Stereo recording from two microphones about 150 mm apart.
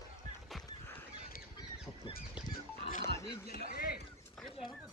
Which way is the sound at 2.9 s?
80° left.